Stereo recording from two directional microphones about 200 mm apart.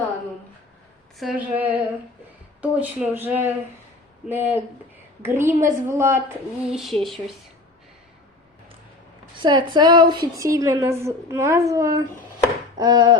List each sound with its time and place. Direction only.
1.2 s a woman's voice: 5° right (ahead or behind)
9.4 s a woman's voice: 20° right (ahead or behind)
12.7 s a sound: 20° right (ahead or behind)